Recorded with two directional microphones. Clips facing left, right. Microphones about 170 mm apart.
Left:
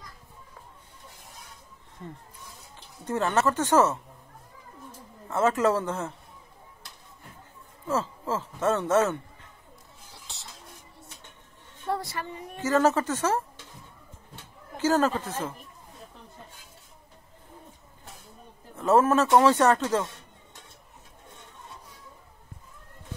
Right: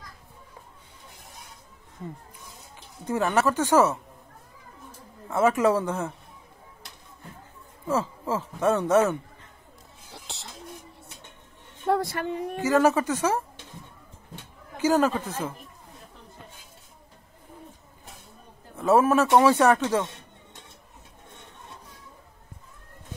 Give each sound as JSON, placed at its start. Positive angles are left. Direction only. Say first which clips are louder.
{"t": 2.0, "sound": "speech", "louder": "right 3 dB", "side_deg": -10}
{"t": 5.3, "sound": "speech", "louder": "right 2 dB", "side_deg": -10}
{"t": 7.8, "sound": "speech", "louder": "right 2 dB", "side_deg": -15}
{"t": 11.8, "sound": "speech", "louder": "right 6 dB", "side_deg": -55}
{"t": 12.6, "sound": "speech", "louder": "right 2 dB", "side_deg": -10}
{"t": 14.3, "sound": "a sound", "louder": "right 1 dB", "side_deg": -15}
{"t": 18.8, "sound": "speech", "louder": "right 1 dB", "side_deg": -10}